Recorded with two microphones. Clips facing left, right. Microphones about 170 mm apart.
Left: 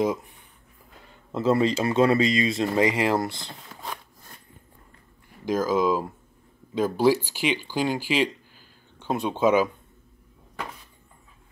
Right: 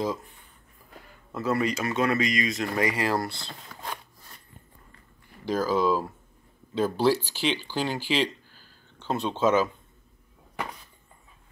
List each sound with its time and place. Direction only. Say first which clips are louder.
1.3 s speech: left 5 dB; 25° left (ahead or behind)
5.5 s speech: left 2 dB; 10° left (ahead or behind)